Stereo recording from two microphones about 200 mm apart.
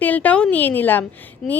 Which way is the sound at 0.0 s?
10° left (ahead or behind).